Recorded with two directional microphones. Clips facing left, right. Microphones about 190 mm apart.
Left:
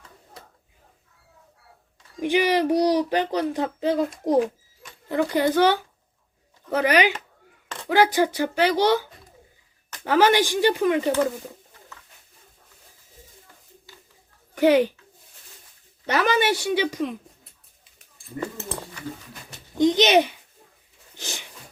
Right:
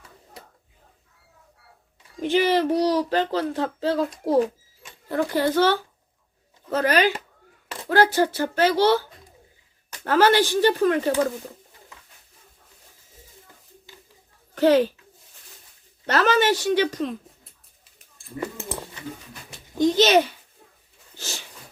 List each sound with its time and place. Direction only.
2.2 s speech: 15° left (ahead or behind)
5.3 s speech: 15° left (ahead or behind)
14.5 s speech: 15° left (ahead or behind)
16.0 s speech: 10° left (ahead or behind)
18.3 s a sound: 10° right (ahead or behind)
19.7 s a child's voice: 20° left (ahead or behind)
21.2 s sneeze: 15° left (ahead or behind)